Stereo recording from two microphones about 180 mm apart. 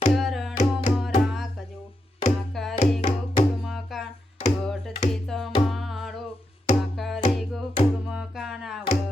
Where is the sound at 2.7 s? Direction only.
40° left (ahead or behind).